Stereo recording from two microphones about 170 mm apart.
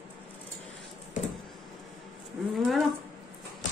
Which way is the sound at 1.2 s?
45° left (ahead or behind).